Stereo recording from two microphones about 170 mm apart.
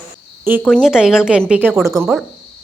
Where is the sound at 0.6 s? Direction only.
Centre (ahead or behind).